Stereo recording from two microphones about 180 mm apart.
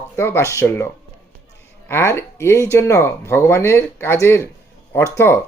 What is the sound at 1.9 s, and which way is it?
Speech, 15° left (ahead or behind).